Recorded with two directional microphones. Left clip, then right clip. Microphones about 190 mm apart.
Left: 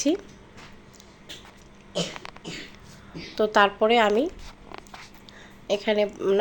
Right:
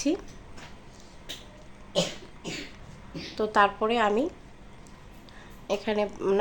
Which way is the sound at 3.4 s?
15° left (ahead or behind).